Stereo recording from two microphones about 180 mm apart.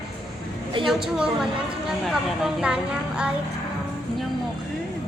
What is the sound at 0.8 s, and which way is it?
Speech, centre (ahead or behind).